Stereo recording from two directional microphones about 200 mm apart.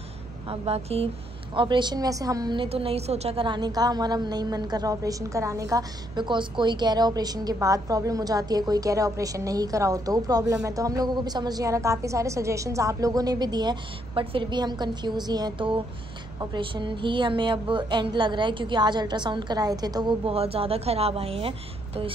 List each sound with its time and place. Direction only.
0.5 s a woman's voice: 30° right (ahead or behind)